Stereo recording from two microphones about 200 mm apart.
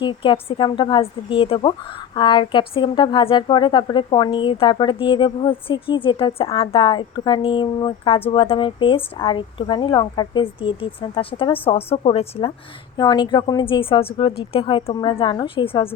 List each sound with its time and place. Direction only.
0.0 s a woman's voice: 25° left (ahead or behind)